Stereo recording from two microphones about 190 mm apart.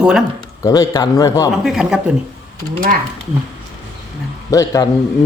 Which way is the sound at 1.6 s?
Centre (ahead or behind).